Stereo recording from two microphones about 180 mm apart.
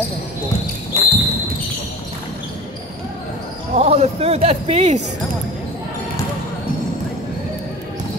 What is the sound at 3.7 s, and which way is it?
Speech, 35° right (ahead or behind).